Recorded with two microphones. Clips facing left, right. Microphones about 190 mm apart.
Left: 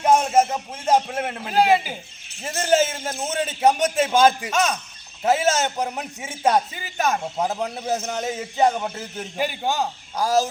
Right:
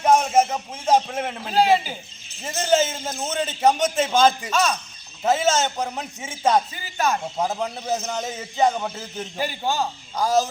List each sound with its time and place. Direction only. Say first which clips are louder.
0.0 s a man's voice: even; 5° left (ahead or behind); by 7.2 s 20° left (ahead or behind)
7.3 s a man's voice: even; 10° left (ahead or behind)
9.4 s a man's voice: left 1 dB; 20° left (ahead or behind)